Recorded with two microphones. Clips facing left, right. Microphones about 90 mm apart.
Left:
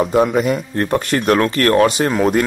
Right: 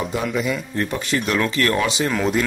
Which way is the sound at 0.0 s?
45° left (ahead or behind).